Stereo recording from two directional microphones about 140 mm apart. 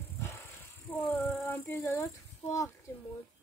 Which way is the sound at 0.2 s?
20° left (ahead or behind).